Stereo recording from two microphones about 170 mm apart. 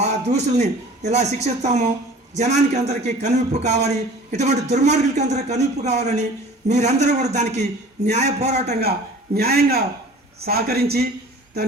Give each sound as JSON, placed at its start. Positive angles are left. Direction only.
{"t": 0.0, "sound": "a man's voice", "side_deg": -40}
{"t": 8.8, "sound": "a man's voice", "side_deg": -65}